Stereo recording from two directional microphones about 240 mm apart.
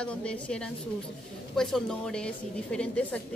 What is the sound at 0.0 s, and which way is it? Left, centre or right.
A woman's voice, centre.